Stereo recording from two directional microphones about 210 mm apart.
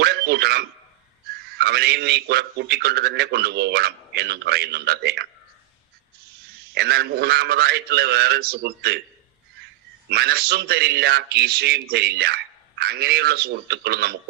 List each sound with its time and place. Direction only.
0.0 s a sound: 50° right (ahead or behind)
1.5 s a man's voice: 50° right (ahead or behind)
6.7 s a man's voice: 50° right (ahead or behind)
10.1 s a man's voice: 50° right (ahead or behind)